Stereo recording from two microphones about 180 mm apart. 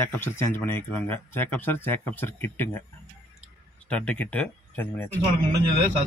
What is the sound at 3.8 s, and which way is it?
Speech, 5° left (ahead or behind).